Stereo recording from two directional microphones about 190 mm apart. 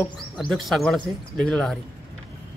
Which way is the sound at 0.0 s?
5° left (ahead or behind).